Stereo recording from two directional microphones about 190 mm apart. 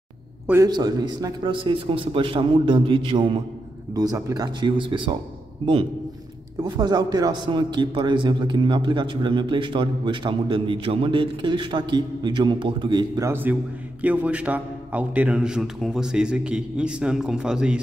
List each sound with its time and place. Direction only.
0.7 s a man's voice: 20° right (ahead or behind)
6.6 s a man's voice: 20° right (ahead or behind); by 17.7 s 5° right (ahead or behind)